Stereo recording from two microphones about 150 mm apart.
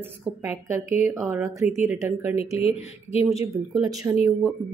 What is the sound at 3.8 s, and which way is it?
Speech, 25° right (ahead or behind).